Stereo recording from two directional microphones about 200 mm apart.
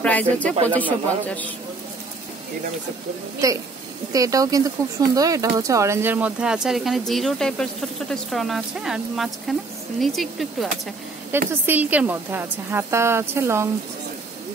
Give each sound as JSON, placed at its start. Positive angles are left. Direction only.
{"t": 0.0, "sound": "speech", "side_deg": 5}
{"t": 3.4, "sound": "a woman's voice", "side_deg": -15}